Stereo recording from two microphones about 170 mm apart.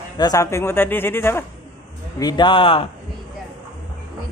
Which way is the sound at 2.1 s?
25° left (ahead or behind).